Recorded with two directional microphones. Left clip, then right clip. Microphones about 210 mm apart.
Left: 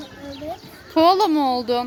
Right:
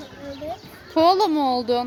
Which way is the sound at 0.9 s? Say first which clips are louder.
Left 2 dB; 5° right (ahead or behind).